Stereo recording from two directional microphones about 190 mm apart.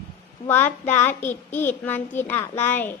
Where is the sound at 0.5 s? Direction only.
10° left (ahead or behind).